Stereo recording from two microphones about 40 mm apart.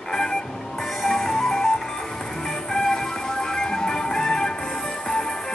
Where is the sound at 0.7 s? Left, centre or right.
Centre.